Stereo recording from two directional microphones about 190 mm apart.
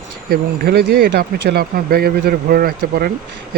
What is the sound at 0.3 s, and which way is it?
Speech, 55° right (ahead or behind).